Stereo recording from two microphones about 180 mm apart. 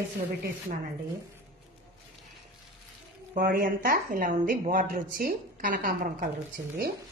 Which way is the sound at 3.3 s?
55° right (ahead or behind).